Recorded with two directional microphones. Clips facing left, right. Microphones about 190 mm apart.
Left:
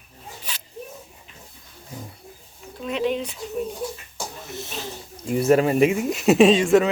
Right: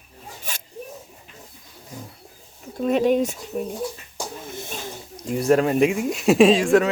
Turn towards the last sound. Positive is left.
turn(degrees=0)  # may be behind; listen again after turning